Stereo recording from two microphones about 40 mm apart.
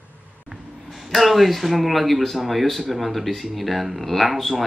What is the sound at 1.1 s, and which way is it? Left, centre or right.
Speech, centre.